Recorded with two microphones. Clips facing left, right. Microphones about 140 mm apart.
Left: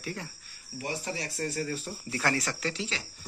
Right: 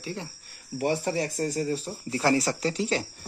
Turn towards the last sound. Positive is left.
turn(degrees=-45)  # may be behind; listen again after turning